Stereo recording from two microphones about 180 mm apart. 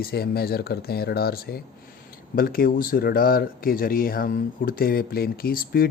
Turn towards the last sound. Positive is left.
turn(degrees=55)  # may be behind; listen again after turning